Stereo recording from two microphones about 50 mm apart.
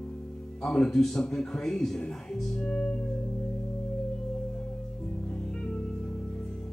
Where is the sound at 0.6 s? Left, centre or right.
Centre.